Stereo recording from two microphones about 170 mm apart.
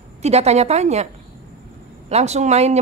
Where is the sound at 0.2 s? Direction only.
40° right (ahead or behind).